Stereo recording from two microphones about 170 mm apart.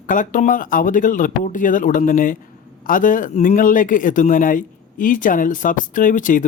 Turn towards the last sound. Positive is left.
turn(degrees=50)  # may be behind; listen again after turning